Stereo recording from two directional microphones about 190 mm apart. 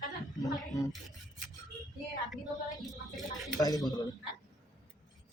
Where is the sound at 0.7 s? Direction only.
20° left (ahead or behind).